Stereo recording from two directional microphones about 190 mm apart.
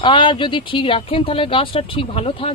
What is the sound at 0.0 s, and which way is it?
Speech, 25° left (ahead or behind).